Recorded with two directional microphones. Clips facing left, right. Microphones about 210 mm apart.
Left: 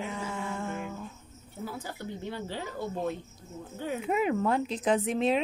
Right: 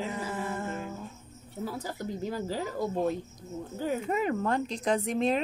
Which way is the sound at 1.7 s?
40° right (ahead or behind).